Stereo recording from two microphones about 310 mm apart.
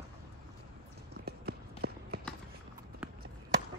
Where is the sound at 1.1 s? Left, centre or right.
Right.